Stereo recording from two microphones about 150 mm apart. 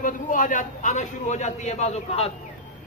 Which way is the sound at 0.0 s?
60° left (ahead or behind).